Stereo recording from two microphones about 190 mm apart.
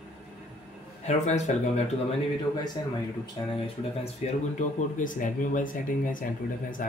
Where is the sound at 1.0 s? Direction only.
35° left (ahead or behind).